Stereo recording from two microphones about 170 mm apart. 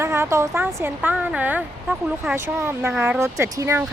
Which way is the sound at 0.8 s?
10° right (ahead or behind).